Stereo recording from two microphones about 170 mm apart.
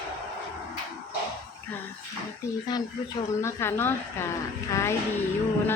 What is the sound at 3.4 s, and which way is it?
Speech, 15° left (ahead or behind).